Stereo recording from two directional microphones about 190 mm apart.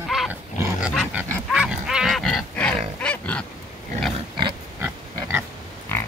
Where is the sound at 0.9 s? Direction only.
5° right (ahead or behind).